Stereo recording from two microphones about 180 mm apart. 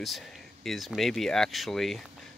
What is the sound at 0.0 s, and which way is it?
Speech, centre (ahead or behind).